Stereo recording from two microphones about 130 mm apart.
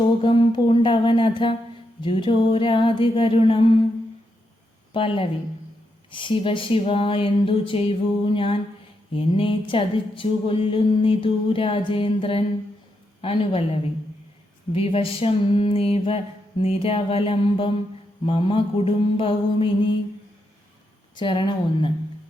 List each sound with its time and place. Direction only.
0.2 s music: 40° left (ahead or behind)
2.0 s mantra: 40° left (ahead or behind)
4.9 s mantra: 40° left (ahead or behind)
6.1 s a sound: 40° left (ahead or behind)
14.7 s a sound: 45° left (ahead or behind)
18.3 s mantra: 40° left (ahead or behind)
21.2 s mantra: 40° left (ahead or behind)